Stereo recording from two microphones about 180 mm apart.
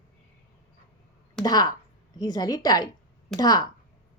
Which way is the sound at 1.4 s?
20° left (ahead or behind).